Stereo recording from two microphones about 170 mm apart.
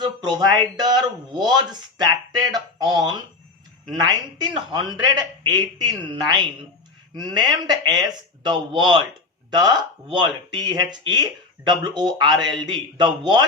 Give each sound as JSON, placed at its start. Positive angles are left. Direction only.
{"t": 0.0, "sound": "speech", "side_deg": -25}